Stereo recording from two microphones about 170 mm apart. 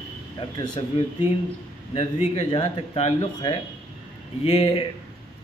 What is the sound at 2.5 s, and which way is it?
A man's voice, 30° left (ahead or behind).